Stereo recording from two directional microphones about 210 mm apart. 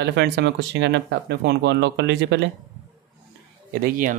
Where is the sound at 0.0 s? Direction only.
55° right (ahead or behind).